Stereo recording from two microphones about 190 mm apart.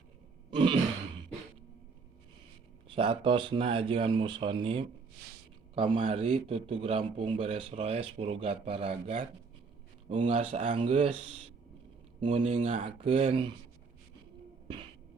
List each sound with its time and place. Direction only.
0.5 s a man's voice: 25° right (ahead or behind)
2.8 s a man's voice: 30° right (ahead or behind)
12.2 s speech: 40° right (ahead or behind)